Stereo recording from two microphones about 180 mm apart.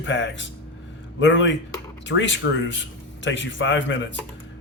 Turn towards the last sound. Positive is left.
turn(degrees=90)